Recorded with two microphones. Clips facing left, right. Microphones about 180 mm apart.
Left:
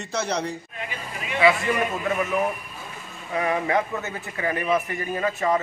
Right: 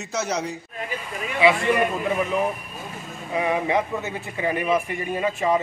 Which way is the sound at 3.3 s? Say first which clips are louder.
Right 1 dB; 15° right (ahead or behind).